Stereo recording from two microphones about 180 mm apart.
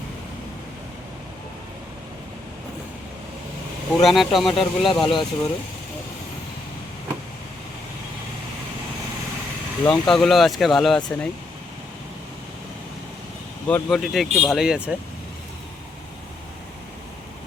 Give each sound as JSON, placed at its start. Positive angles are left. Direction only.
{"t": 4.0, "sound": "speech", "side_deg": 0}
{"t": 4.9, "sound": "speech", "side_deg": 25}
{"t": 9.8, "sound": "speech", "side_deg": 5}
{"t": 13.7, "sound": "speech", "side_deg": 5}